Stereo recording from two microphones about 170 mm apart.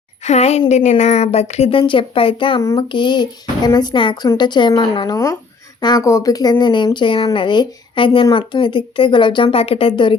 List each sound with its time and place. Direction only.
0.2 s a woman's voice: 40° left (ahead or behind)